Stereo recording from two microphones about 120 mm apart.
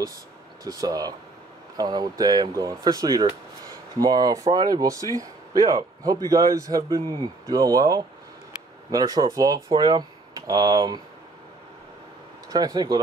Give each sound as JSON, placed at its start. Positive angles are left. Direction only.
{"t": 0.7, "sound": "speech", "side_deg": -30}
{"t": 12.4, "sound": "speech", "side_deg": -35}